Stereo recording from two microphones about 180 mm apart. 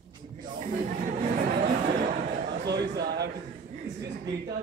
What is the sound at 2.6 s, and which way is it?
Speech, 65° right (ahead or behind).